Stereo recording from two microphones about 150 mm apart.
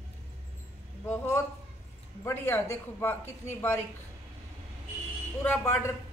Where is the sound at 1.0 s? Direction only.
15° left (ahead or behind).